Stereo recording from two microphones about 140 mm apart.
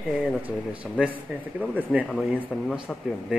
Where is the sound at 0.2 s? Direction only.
5° right (ahead or behind).